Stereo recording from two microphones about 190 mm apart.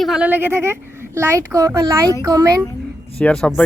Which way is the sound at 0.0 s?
5° right (ahead or behind).